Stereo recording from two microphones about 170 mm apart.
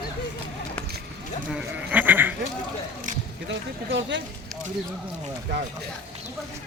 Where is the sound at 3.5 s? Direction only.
90° right.